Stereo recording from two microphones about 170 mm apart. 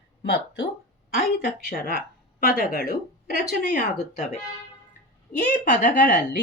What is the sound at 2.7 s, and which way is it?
Speech, 65° right (ahead or behind).